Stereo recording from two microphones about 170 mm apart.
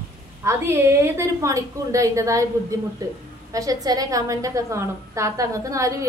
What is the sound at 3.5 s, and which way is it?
A woman's voice, 20° right (ahead or behind).